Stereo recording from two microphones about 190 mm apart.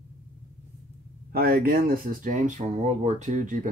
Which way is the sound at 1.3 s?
55° right (ahead or behind).